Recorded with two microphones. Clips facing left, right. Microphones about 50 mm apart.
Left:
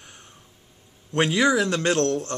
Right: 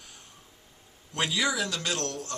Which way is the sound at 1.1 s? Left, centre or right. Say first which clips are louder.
Left 8 dB; left.